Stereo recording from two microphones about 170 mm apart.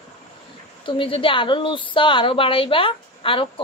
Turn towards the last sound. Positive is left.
turn(degrees=30)  # may be behind; listen again after turning